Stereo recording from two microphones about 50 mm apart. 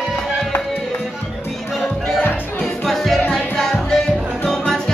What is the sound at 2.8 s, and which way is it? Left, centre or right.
Music, centre.